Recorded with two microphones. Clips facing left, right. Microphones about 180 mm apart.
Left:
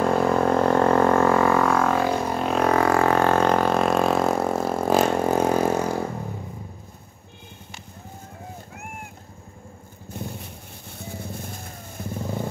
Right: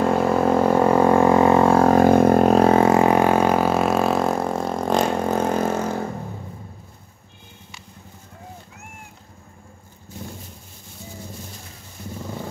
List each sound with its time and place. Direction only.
0.0 s didgeridoo: 5° right (ahead or behind); by 2.5 s 55° right (ahead or behind)
2.5 s vehicle: 30° right (ahead or behind); by 5.9 s 10° left (ahead or behind)
10.1 s a sound: 60° left (ahead or behind)
11.0 s vehicle: 55° left (ahead or behind)
12.0 s wild animals: 50° left (ahead or behind)